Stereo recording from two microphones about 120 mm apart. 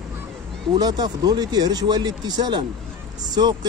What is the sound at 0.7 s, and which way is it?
Speech, 35° right (ahead or behind).